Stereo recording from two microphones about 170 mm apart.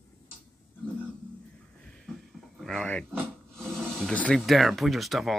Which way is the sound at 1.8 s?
5° left (ahead or behind).